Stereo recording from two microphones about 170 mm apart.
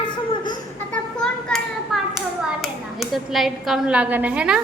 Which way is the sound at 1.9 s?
Centre (ahead or behind).